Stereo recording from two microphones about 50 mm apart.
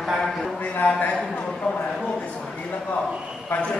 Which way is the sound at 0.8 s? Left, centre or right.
Left.